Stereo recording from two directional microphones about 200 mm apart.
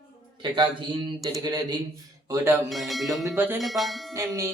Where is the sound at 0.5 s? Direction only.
20° right (ahead or behind).